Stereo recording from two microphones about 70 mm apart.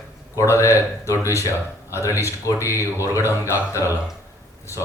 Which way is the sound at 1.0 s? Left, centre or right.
Left.